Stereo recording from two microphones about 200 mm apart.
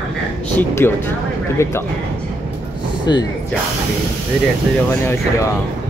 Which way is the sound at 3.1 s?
20° left (ahead or behind).